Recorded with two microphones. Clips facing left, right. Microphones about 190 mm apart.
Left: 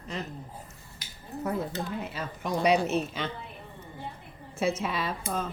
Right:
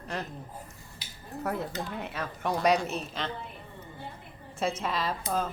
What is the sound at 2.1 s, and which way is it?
Speech, 65° right (ahead or behind).